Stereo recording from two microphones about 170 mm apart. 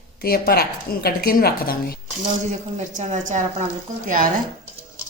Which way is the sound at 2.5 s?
40° right (ahead or behind).